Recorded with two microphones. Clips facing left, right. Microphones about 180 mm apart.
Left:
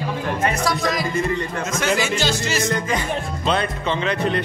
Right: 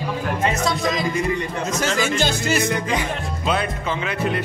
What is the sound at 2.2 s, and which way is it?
Music, 55° right (ahead or behind).